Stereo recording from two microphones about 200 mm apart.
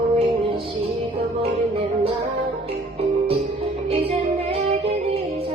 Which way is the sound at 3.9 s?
30° right (ahead or behind).